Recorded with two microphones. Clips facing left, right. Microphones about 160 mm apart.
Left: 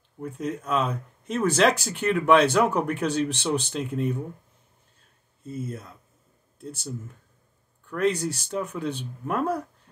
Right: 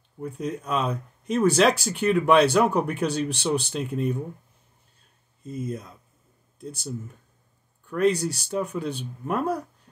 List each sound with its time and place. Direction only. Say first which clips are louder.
0.2 s speech: even; 15° right (ahead or behind)
5.4 s speech: right 2 dB; 15° right (ahead or behind)
7.9 s speech: right 2 dB; 10° right (ahead or behind)